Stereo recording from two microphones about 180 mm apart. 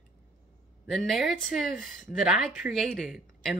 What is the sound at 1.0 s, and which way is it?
A woman's voice, centre (ahead or behind).